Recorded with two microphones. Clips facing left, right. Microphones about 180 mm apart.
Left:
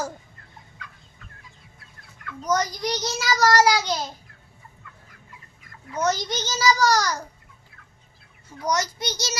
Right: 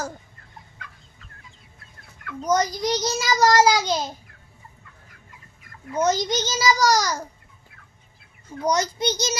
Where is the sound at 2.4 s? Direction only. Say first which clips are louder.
Right 3 dB; 15° right (ahead or behind).